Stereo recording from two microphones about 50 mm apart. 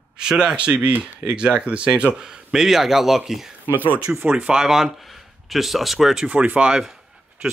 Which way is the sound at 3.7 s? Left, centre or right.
Right.